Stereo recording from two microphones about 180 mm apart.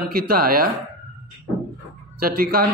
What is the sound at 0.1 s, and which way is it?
Speech, 55° right (ahead or behind).